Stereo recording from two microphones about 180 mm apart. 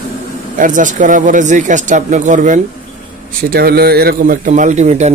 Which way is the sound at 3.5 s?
60° right (ahead or behind).